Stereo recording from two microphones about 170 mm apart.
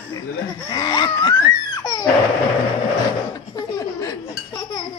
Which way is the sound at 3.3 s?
25° left (ahead or behind).